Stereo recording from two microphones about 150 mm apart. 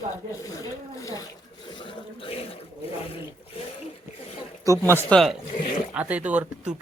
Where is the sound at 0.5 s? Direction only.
20° left (ahead or behind).